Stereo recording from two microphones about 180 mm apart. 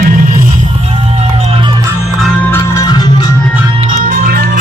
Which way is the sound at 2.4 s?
20° left (ahead or behind).